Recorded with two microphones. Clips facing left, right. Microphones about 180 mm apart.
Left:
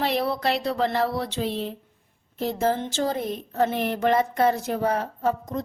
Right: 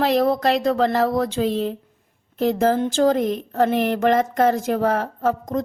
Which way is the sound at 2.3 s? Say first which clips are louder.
Right 7 dB; 90° right.